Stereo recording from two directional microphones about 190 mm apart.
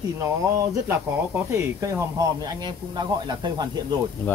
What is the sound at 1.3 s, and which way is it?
A man's voice, 15° right (ahead or behind).